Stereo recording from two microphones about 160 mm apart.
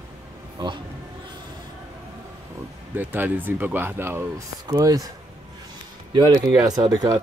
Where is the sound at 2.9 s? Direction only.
10° right (ahead or behind).